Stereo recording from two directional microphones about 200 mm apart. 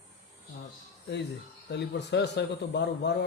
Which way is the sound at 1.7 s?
60° left (ahead or behind).